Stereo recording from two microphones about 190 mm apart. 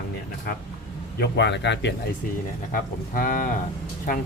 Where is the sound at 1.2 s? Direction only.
65° left (ahead or behind).